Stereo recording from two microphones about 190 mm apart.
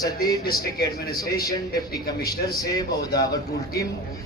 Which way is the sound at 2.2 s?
20° left (ahead or behind).